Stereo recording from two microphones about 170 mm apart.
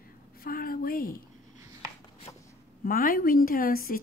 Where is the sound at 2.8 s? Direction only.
55° left (ahead or behind).